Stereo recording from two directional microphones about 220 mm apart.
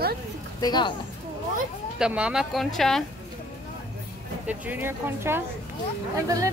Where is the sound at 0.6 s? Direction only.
20° left (ahead or behind).